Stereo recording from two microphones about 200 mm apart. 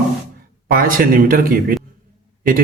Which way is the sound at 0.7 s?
45° right (ahead or behind).